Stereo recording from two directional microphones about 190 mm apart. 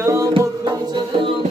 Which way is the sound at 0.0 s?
15° right (ahead or behind).